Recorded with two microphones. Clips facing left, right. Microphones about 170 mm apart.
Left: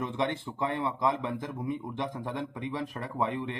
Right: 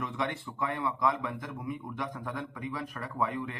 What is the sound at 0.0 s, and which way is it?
A man's voice, 25° left (ahead or behind).